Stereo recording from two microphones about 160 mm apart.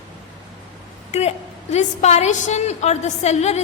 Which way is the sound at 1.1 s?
45° left (ahead or behind).